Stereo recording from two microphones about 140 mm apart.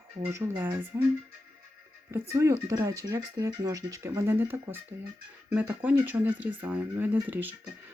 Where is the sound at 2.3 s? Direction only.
20° right (ahead or behind).